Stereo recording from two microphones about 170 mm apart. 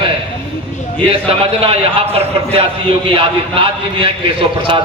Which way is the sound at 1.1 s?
35° right (ahead or behind).